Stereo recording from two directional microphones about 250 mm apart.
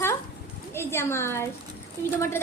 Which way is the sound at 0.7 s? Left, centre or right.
Centre.